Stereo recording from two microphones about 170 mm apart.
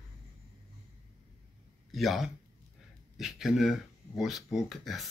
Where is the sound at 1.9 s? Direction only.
Centre (ahead or behind).